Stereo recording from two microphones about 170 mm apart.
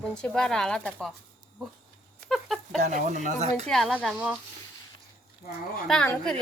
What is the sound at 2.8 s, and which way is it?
Speech, 45° right (ahead or behind).